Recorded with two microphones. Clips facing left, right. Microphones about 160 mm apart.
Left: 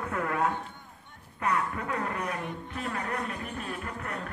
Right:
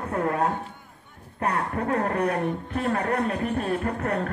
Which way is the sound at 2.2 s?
60° right (ahead or behind).